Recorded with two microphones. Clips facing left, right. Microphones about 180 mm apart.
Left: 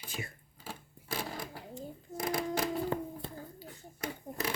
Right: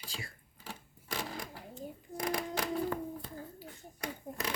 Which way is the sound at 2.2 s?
25° left (ahead or behind).